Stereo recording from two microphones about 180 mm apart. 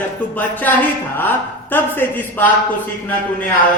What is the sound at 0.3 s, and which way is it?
Speech, 10° left (ahead or behind).